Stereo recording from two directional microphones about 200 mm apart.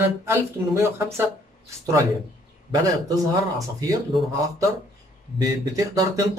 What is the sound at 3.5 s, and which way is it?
Speech, 15° right (ahead or behind).